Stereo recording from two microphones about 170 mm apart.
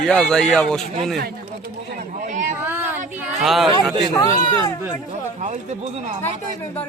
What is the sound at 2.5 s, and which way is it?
Child singing, 10° right (ahead or behind).